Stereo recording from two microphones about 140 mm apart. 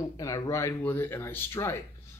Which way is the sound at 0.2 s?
25° left (ahead or behind).